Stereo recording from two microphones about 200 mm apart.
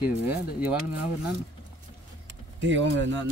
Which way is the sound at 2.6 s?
65° right (ahead or behind).